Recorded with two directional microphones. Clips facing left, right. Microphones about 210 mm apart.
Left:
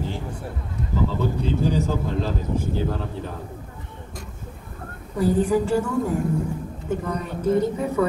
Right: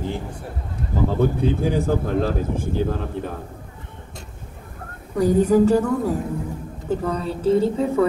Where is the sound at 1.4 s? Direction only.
55° right (ahead or behind).